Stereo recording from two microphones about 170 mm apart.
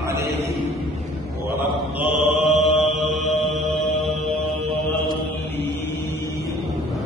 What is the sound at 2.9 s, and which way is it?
Music, centre (ahead or behind).